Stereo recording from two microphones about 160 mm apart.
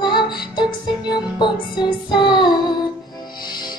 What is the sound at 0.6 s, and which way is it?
Music, 25° left (ahead or behind).